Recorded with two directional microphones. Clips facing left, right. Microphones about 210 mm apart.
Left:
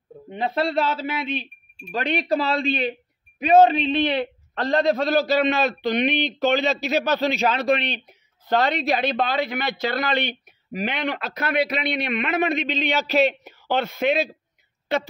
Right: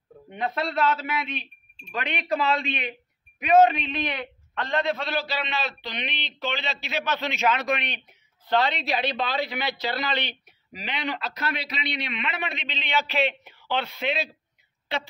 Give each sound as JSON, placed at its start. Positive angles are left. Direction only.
{"t": 0.3, "sound": "a man's voice", "side_deg": 30}